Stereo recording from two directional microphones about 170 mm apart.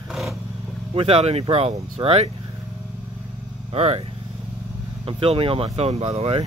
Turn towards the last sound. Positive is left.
turn(degrees=-35)  # may be behind; listen again after turning